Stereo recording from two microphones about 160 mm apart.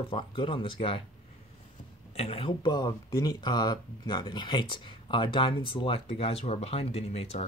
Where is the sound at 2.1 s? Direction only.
40° left (ahead or behind).